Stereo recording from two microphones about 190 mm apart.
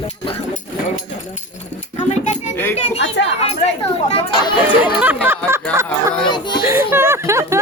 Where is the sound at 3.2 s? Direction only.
65° left (ahead or behind).